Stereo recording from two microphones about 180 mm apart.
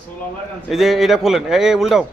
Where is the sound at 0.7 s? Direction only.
Centre (ahead or behind).